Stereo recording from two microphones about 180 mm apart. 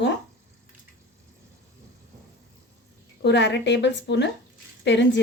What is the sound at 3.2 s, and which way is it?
A woman's voice, 75° left (ahead or behind).